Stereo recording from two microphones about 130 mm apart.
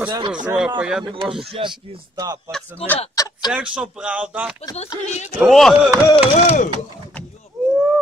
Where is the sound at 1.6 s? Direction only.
45° right (ahead or behind).